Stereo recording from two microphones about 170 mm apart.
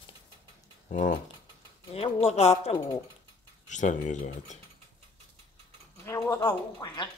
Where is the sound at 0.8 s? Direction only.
50° left (ahead or behind).